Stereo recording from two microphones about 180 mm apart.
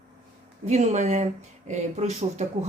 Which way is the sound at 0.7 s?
40° right (ahead or behind).